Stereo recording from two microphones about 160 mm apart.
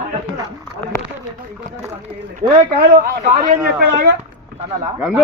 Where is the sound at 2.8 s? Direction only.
60° right (ahead or behind).